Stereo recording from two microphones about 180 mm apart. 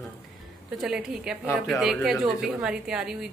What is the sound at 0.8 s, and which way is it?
A woman's voice, 5° right (ahead or behind).